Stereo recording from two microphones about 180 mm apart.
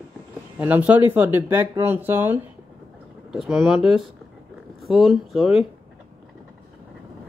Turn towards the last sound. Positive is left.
turn(degrees=0)  # may be behind; listen again after turning